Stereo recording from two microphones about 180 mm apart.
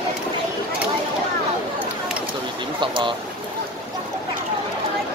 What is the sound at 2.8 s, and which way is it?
Speech, 25° right (ahead or behind).